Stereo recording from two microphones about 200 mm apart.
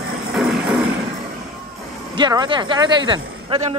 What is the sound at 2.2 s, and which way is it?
A man's voice, 20° right (ahead or behind).